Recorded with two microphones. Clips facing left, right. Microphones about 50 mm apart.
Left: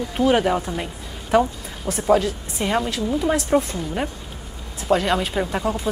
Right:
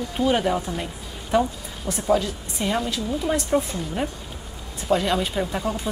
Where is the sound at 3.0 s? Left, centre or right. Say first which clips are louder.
Left 4 dB; centre.